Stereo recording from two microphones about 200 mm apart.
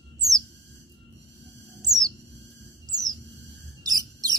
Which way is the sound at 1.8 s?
20° right (ahead or behind).